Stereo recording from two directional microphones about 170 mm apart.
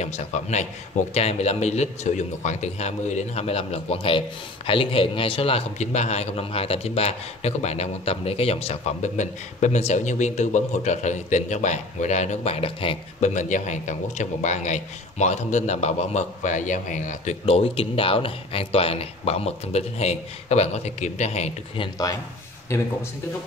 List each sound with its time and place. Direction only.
0.0 s a man's voice: 40° left (ahead or behind)
13.3 s a man's voice: 45° left (ahead or behind)
22.7 s speech: 15° left (ahead or behind)